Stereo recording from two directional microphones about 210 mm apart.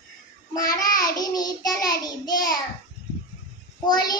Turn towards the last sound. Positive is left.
turn(degrees=20)  # may be behind; listen again after turning